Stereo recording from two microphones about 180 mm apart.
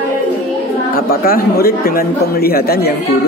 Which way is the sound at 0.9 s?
55° left (ahead or behind).